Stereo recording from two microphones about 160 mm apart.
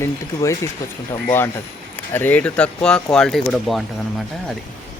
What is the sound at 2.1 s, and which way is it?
Speech, 10° left (ahead or behind).